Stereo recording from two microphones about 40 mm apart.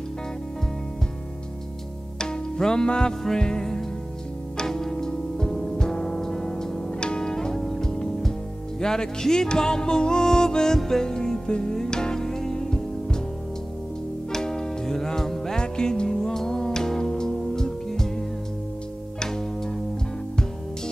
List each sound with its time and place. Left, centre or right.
2.1 s music: centre
6.9 s music: left
14.3 s music: centre
19.1 s music: centre